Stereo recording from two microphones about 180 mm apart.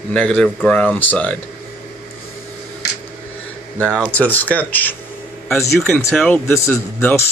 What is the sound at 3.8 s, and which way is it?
Speech, 5° left (ahead or behind).